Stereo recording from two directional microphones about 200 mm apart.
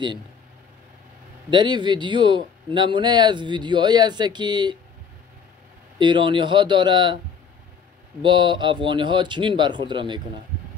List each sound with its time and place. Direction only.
1.5 s a man's voice: 20° right (ahead or behind)
5.9 s a man's voice: 25° right (ahead or behind)
8.2 s a man's voice: 25° right (ahead or behind)